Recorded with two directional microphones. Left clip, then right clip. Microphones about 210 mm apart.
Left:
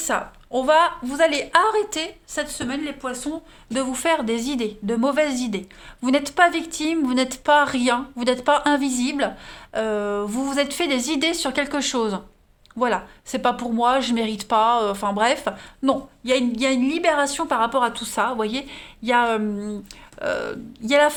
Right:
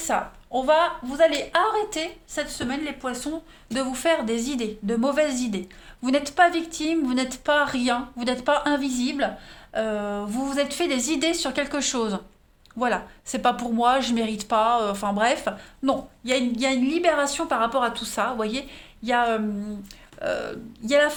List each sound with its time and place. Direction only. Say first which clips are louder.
0.0 s a woman's voice: left 1 dB; 40° left (ahead or behind)